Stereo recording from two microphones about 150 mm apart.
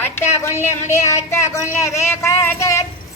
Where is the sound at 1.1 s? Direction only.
20° left (ahead or behind).